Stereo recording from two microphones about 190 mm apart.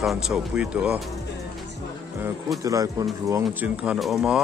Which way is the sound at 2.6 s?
15° right (ahead or behind).